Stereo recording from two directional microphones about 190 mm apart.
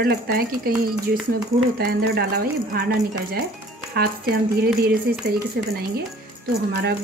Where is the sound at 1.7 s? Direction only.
55° right (ahead or behind).